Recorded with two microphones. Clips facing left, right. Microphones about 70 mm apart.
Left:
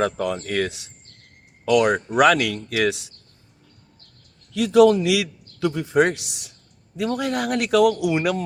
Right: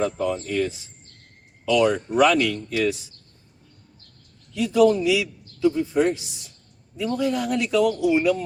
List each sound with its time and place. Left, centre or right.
0.0 s a man's voice: left
4.5 s a man's voice: left